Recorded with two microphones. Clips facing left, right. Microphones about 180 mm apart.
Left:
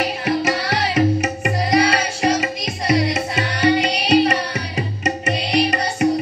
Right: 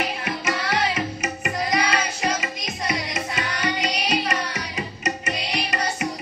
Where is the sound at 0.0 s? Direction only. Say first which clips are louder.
Left 7 dB; 40° left (ahead or behind).